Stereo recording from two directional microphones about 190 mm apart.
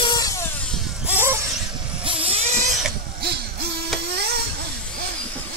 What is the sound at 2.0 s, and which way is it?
Vehicle, 30° right (ahead or behind).